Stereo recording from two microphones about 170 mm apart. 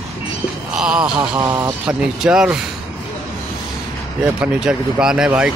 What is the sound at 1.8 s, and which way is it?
Speech, 5° right (ahead or behind).